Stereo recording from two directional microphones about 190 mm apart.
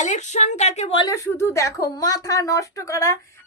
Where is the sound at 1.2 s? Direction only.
15° left (ahead or behind).